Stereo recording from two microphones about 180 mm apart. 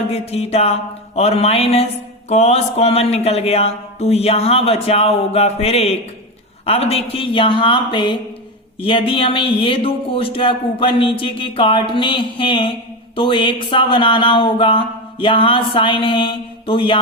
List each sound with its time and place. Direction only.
0.1 s speech: 35° left (ahead or behind)